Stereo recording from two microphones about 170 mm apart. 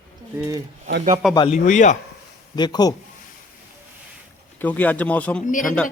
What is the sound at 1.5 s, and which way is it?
Speech, 45° left (ahead or behind).